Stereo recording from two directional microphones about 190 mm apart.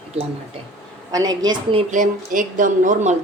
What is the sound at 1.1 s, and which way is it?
Speech, 20° right (ahead or behind).